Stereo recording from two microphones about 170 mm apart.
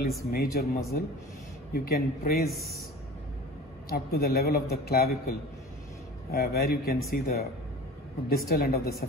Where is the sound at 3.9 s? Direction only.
60° left (ahead or behind).